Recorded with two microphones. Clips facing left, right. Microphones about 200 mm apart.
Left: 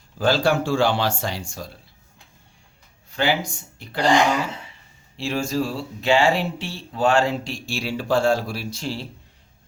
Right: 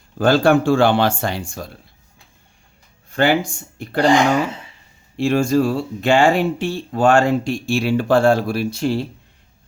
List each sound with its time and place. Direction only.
0.2 s speech: 50° right (ahead or behind)
3.1 s speech: 50° right (ahead or behind)
5.1 s speech: 50° right (ahead or behind)